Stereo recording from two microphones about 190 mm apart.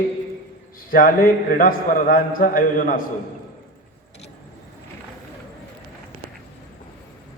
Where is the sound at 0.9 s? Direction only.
45° left (ahead or behind).